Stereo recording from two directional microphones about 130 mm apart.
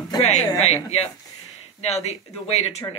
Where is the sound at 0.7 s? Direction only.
50° left (ahead or behind).